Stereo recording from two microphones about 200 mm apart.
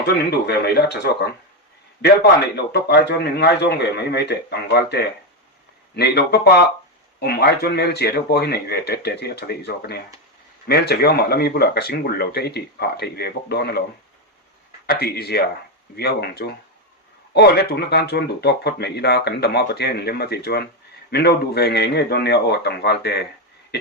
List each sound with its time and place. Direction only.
0.1 s a man's voice: 55° left (ahead or behind)
2.6 s a man's voice: 55° left (ahead or behind)
14.8 s a man's voice: 50° left (ahead or behind)